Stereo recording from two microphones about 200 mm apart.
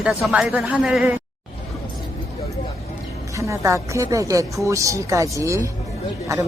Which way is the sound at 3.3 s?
15° right (ahead or behind).